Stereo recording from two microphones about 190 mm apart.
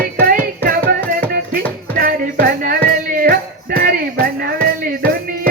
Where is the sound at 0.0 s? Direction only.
50° right (ahead or behind).